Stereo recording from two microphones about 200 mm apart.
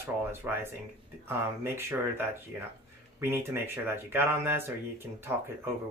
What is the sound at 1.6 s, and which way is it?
Speech, 10° right (ahead or behind).